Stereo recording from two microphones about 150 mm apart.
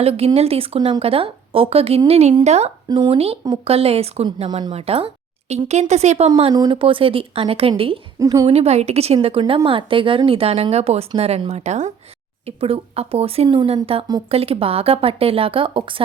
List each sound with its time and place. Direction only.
0.0 s a woman's voice: 40° right (ahead or behind)
2.9 s a woman's voice: 30° right (ahead or behind)
6.5 s speech: 30° right (ahead or behind)
8.2 s a woman's voice: 25° right (ahead or behind)
8.4 s a woman's voice: 45° right (ahead or behind)